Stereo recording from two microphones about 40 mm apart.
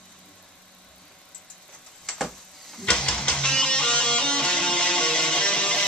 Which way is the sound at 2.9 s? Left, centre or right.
Left.